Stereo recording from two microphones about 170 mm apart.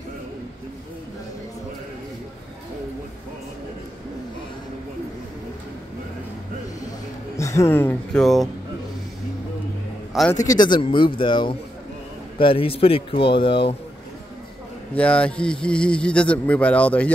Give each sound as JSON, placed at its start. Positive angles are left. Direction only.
{"t": 7.3, "sound": "speech", "side_deg": 15}
{"t": 10.3, "sound": "speech", "side_deg": 20}
{"t": 15.0, "sound": "speech", "side_deg": 5}